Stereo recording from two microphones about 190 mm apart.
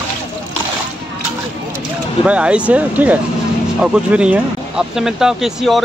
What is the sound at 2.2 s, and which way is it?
A man's voice, 5° right (ahead or behind).